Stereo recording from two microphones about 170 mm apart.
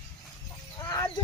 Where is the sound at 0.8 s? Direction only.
20° left (ahead or behind).